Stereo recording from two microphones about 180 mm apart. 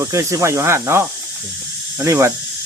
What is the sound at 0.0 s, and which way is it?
Speech, 15° right (ahead or behind).